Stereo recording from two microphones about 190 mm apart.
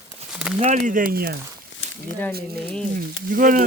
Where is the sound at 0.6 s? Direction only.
40° right (ahead or behind).